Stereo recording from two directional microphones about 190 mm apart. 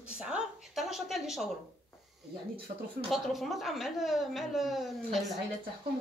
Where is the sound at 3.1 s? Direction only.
Centre (ahead or behind).